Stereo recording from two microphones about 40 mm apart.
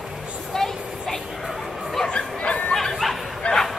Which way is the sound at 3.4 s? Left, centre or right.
Left.